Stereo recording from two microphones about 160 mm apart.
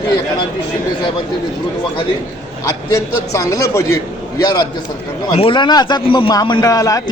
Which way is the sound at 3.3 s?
20° left (ahead or behind).